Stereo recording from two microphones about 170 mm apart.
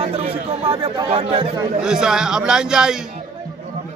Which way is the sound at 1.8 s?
5° right (ahead or behind).